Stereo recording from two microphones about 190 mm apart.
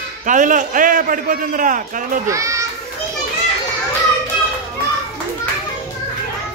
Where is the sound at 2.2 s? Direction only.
15° right (ahead or behind).